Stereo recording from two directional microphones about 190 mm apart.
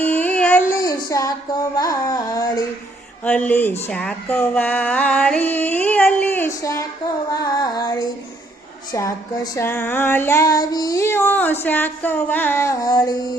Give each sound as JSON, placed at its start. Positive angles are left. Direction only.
{"t": 0.0, "sound": "child singing", "side_deg": 10}
{"t": 3.2, "sound": "female singing", "side_deg": 5}